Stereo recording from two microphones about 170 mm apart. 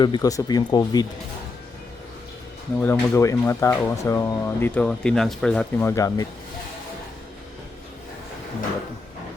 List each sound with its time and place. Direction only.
0.0 s speech: 25° left (ahead or behind)
2.8 s speech: 15° left (ahead or behind)